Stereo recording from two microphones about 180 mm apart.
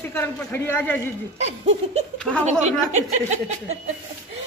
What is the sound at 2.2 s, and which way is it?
Speech, 5° left (ahead or behind).